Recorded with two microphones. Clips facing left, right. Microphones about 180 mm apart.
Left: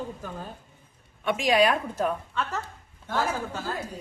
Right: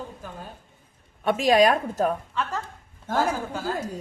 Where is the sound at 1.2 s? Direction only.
40° right (ahead or behind).